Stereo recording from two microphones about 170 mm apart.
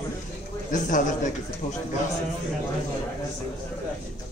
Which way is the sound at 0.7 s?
50° left (ahead or behind).